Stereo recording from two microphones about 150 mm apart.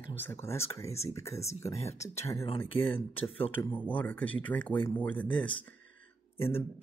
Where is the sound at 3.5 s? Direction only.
10° left (ahead or behind).